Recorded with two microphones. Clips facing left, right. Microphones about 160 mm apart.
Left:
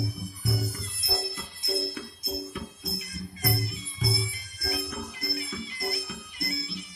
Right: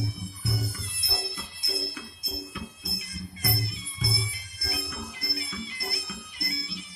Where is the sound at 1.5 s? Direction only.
45° left (ahead or behind).